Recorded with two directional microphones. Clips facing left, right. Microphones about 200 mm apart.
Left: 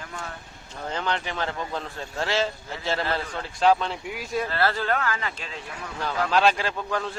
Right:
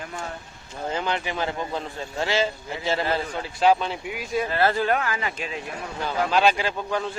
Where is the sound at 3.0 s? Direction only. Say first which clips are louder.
Right 3 dB; 15° right (ahead or behind).